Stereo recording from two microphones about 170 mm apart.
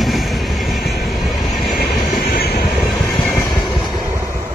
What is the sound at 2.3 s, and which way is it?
Vehicle, 70° left (ahead or behind).